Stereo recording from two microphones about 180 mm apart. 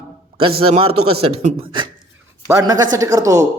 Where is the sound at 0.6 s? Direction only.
30° right (ahead or behind).